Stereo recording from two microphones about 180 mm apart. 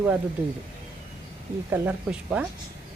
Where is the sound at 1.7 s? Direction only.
10° right (ahead or behind).